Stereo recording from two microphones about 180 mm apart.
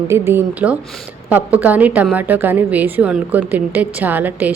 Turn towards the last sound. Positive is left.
turn(degrees=-10)  # may be behind; listen again after turning